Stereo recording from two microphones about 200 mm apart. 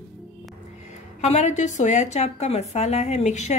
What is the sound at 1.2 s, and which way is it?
A woman's voice, 35° left (ahead or behind).